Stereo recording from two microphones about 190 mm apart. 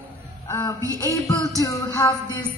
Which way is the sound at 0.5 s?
15° left (ahead or behind).